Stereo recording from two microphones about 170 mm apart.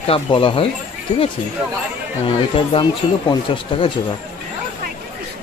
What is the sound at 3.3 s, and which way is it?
Speech, 30° left (ahead or behind).